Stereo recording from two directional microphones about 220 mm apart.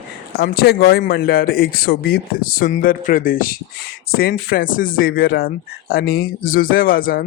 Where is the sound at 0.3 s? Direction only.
45° left (ahead or behind).